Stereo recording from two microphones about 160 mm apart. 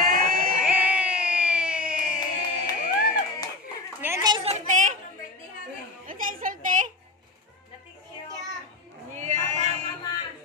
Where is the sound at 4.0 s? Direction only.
20° right (ahead or behind).